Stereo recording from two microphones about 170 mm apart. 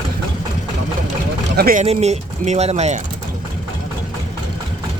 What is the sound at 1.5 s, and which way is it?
Speech, 60° right (ahead or behind).